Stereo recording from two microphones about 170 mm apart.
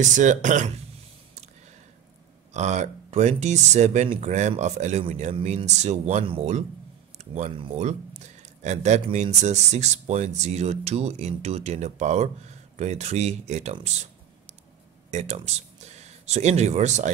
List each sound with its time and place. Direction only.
0.0 s speech: 45° right (ahead or behind)
2.5 s speech: 40° right (ahead or behind)
15.0 s speech: 40° right (ahead or behind)